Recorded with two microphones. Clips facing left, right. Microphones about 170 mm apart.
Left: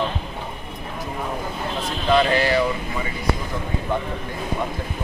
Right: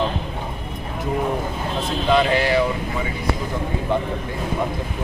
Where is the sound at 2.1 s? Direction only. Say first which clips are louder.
Even; 15° right (ahead or behind).